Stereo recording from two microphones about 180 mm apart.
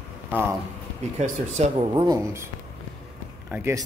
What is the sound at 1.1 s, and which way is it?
Speech, 40° right (ahead or behind).